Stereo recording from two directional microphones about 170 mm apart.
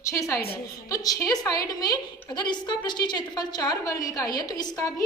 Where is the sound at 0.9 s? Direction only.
20° left (ahead or behind).